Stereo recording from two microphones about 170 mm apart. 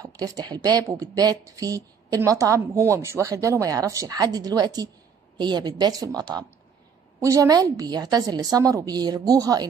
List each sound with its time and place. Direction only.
0.2 s speech: 25° right (ahead or behind)